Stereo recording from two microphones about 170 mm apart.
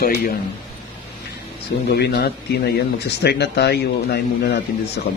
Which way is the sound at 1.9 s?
75° left (ahead or behind).